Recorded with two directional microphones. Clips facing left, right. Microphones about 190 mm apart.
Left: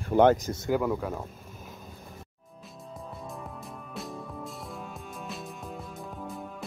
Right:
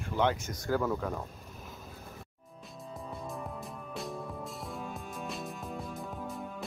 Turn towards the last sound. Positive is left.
turn(degrees=0)  # may be behind; listen again after turning